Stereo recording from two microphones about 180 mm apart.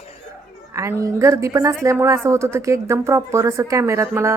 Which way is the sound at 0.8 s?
15° right (ahead or behind).